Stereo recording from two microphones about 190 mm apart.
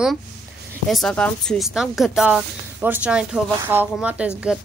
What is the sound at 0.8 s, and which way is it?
A woman's voice, centre (ahead or behind).